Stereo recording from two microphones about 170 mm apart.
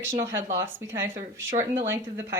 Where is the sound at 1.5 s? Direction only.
45° right (ahead or behind).